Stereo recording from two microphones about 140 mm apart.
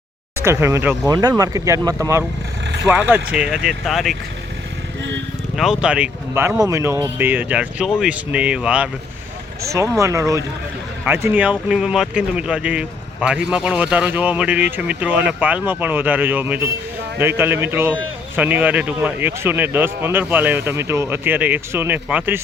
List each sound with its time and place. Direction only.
0.3 s speech: 20° right (ahead or behind)
2.8 s speech: 10° right (ahead or behind)
5.5 s speech: 5° right (ahead or behind)
9.6 s speech: 20° right (ahead or behind)